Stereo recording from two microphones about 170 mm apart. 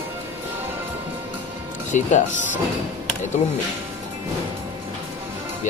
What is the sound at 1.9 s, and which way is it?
Speech, 45° left (ahead or behind).